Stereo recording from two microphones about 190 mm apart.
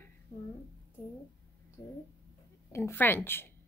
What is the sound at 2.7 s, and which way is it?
Speech, 10° left (ahead or behind).